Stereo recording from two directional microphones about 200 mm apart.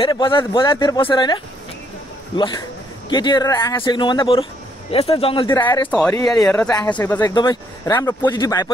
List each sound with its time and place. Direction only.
0.0 s speech: 25° left (ahead or behind)
5.9 s speech: 5° left (ahead or behind); by 8.7 s 20° left (ahead or behind)